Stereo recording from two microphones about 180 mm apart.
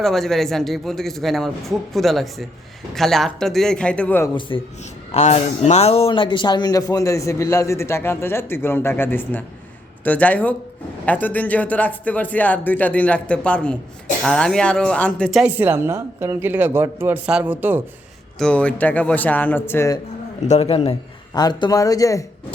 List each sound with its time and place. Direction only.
0.0 s speech: centre (ahead or behind)
4.4 s a man's voice: 25° left (ahead or behind); by 15.5 s centre (ahead or behind)
15.5 s speech: 10° right (ahead or behind)
18.3 s speech: 5° left (ahead or behind)
20.5 s a man's voice: 30° left (ahead or behind)
21.3 s a man's voice: 20° left (ahead or behind)